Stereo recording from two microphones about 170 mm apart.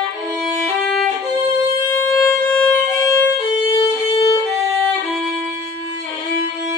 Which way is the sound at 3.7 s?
25° left (ahead or behind).